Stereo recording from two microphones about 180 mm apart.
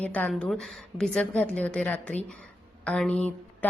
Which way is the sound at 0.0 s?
5° left (ahead or behind).